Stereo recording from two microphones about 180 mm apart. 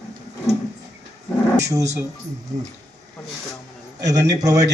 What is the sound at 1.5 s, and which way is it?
Speech, 15° right (ahead or behind).